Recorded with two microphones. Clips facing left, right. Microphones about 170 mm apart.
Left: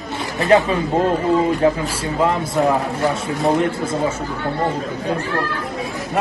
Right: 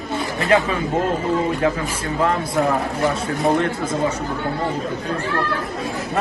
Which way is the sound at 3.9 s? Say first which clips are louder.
Left 1 dB; 25° left (ahead or behind).